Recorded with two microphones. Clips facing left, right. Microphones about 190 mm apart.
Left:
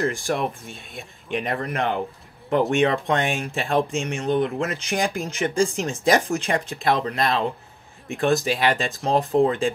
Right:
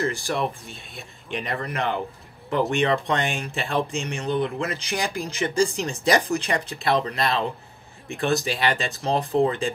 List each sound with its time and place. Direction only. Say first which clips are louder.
0.0 s speech: left 2 dB; 50° left (ahead or behind)